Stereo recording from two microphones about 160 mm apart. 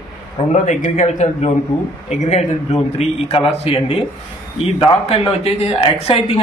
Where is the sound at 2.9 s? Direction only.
40° left (ahead or behind).